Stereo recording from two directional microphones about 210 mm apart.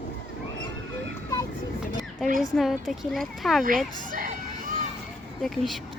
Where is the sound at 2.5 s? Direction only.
Centre (ahead or behind).